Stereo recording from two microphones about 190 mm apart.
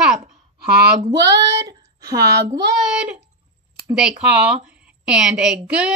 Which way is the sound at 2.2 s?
60° right (ahead or behind).